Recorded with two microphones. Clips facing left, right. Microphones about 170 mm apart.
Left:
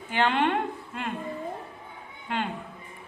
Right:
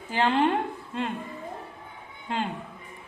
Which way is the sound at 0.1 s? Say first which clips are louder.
Right 1 dB; 35° right (ahead or behind).